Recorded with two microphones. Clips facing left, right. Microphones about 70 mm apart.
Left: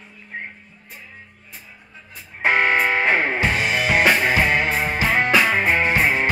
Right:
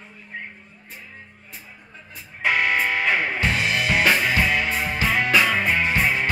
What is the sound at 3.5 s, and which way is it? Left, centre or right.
Music, centre.